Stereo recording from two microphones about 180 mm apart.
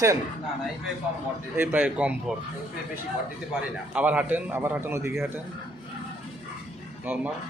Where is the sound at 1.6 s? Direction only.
10° right (ahead or behind).